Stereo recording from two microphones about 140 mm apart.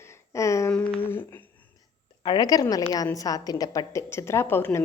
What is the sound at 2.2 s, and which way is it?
A woman's voice, 30° left (ahead or behind).